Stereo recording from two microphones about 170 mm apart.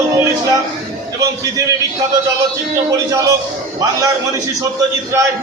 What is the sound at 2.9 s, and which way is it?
A man's voice, 20° right (ahead or behind).